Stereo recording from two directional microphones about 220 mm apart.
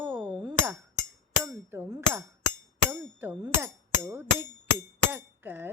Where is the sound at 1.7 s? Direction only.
10° right (ahead or behind).